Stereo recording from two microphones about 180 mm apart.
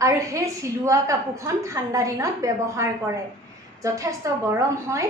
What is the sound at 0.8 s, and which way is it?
A woman's voice, 15° right (ahead or behind).